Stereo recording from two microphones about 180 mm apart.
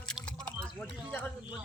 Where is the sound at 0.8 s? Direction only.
5° left (ahead or behind).